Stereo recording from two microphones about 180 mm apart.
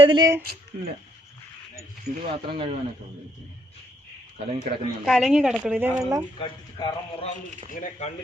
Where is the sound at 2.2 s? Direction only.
25° right (ahead or behind).